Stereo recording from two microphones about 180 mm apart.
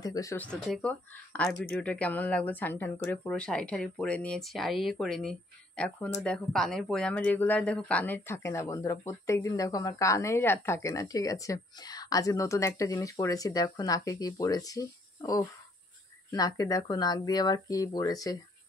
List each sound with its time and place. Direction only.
0.0 s speech: 20° left (ahead or behind)
0.5 s speech: 5° left (ahead or behind); by 18.4 s 20° left (ahead or behind)